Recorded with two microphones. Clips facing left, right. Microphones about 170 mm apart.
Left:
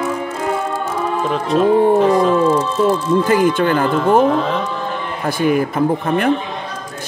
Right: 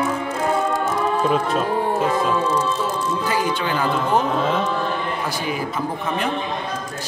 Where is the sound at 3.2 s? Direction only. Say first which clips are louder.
Left 7 dB; 50° left (ahead or behind).